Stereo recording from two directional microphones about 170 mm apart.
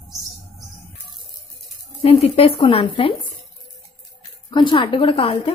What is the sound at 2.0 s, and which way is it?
A woman's voice, 35° left (ahead or behind).